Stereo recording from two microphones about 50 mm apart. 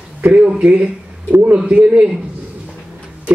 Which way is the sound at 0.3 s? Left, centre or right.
Right.